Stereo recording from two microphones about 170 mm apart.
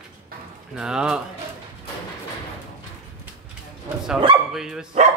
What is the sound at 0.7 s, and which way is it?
Speech, 5° right (ahead or behind).